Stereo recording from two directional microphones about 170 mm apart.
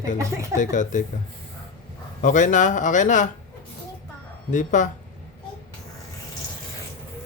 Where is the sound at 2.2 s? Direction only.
50° left (ahead or behind).